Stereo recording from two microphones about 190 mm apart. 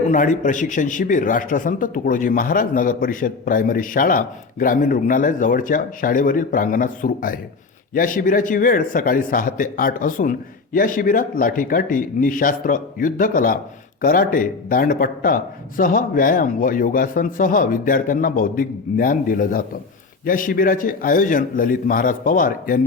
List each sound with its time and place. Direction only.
0.1 s a man's voice: 40° left (ahead or behind)